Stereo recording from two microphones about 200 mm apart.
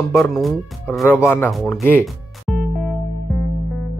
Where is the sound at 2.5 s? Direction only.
Centre (ahead or behind).